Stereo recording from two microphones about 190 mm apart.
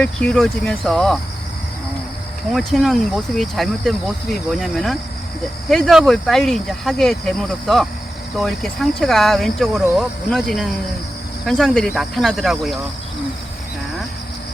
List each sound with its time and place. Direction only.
0.0 s speech: 5° left (ahead or behind)
2.5 s speech: centre (ahead or behind)